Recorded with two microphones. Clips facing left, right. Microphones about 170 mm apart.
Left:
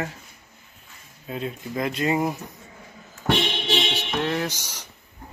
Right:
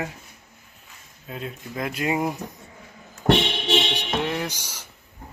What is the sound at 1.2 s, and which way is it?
Speech, centre (ahead or behind).